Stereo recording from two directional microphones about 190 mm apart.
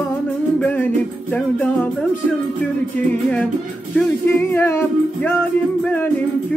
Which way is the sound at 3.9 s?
10° left (ahead or behind).